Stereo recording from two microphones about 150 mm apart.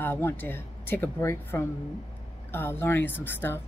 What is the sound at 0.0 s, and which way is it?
Speech, 15° left (ahead or behind).